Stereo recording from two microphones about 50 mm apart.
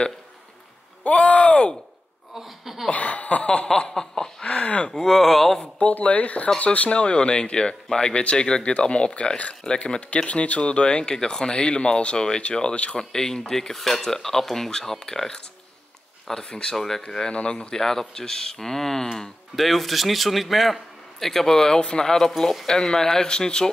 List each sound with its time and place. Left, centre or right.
1.0 s a sound: left
2.3 s speech: centre
2.9 s speech: left
3.6 s snicker: centre
4.5 s speech: left
4.8 s a man's voice: centre
5.6 s speech: left
13.1 s speech: centre
16.4 s speech: left
16.7 s speech: centre
17.1 s a man's voice: centre